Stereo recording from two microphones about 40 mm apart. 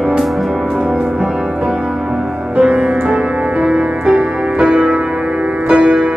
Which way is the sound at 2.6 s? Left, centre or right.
Right.